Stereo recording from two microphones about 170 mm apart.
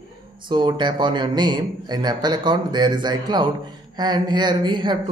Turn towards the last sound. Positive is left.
turn(degrees=-25)  # may be behind; listen again after turning